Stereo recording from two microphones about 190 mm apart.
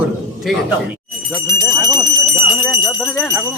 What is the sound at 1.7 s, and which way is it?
Speech, 20° right (ahead or behind).